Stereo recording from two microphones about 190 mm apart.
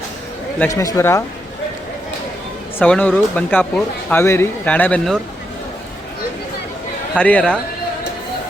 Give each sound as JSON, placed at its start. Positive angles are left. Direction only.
{"t": 0.6, "sound": "speech", "side_deg": 15}
{"t": 2.7, "sound": "speech", "side_deg": 10}
{"t": 7.2, "sound": "speech", "side_deg": 5}